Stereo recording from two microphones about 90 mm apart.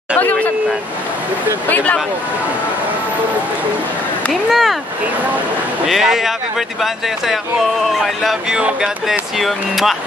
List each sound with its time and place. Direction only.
0.2 s speech: 20° left (ahead or behind)
4.3 s speech: centre (ahead or behind)
5.9 s speech: 5° right (ahead or behind)
7.9 s speech: centre (ahead or behind)